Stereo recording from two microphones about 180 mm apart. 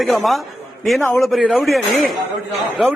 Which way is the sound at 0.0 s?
Centre (ahead or behind).